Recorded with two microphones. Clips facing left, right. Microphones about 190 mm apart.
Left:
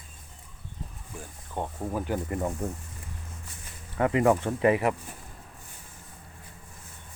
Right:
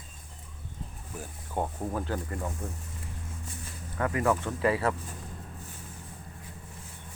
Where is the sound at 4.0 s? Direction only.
20° left (ahead or behind).